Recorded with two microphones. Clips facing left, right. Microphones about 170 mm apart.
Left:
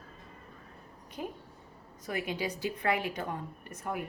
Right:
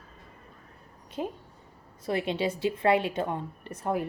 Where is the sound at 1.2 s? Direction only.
25° right (ahead or behind).